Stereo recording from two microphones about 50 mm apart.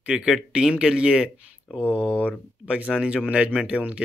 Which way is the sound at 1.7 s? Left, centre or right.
Left.